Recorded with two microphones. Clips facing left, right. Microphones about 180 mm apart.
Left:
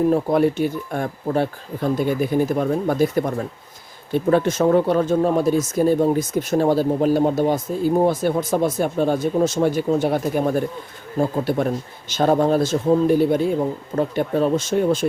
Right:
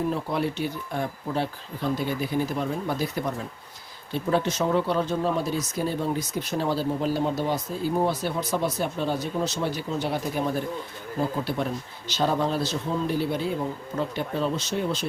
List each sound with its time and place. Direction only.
0.1 s speech: 50° left (ahead or behind)